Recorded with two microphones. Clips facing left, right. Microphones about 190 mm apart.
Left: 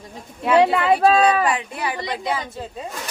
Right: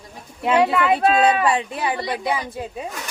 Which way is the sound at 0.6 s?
30° left (ahead or behind).